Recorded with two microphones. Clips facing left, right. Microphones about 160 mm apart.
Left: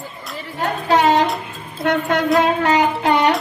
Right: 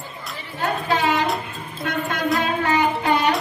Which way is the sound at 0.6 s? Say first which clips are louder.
Left 5 dB; 85° left.